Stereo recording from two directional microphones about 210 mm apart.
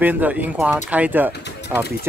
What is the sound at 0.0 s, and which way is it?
Speech, 10° right (ahead or behind).